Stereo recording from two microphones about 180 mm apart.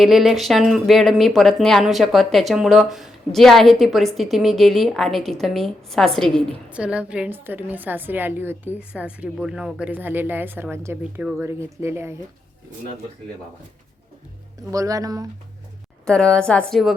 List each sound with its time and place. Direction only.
0.0 s speech: centre (ahead or behind)
14.7 s speech: 20° right (ahead or behind)
16.0 s speech: 5° left (ahead or behind)